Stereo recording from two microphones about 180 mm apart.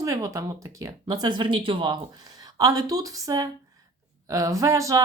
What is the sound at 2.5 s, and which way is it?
Speech, 20° right (ahead or behind).